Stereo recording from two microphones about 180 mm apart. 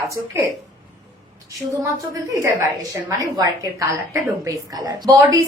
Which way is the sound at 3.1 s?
20° right (ahead or behind).